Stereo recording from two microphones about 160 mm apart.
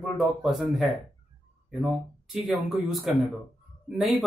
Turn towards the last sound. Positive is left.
turn(degrees=-5)  # may be behind; listen again after turning